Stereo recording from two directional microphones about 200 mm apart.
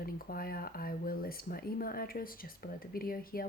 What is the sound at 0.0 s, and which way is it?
Speech, 45° left (ahead or behind).